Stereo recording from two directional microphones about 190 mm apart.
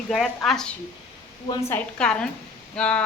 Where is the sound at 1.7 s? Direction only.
5° left (ahead or behind).